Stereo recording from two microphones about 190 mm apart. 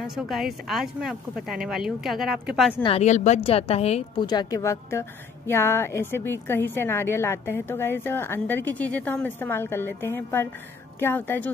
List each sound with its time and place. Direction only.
0.0 s speech: centre (ahead or behind)
2.8 s a woman's voice: 35° left (ahead or behind)
4.3 s a woman's voice: 20° left (ahead or behind)